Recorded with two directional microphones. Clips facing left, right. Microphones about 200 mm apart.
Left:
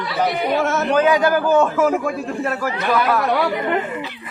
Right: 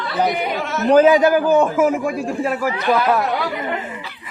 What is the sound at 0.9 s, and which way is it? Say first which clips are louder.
A man's voice: right 6 dB; 30° right (ahead or behind).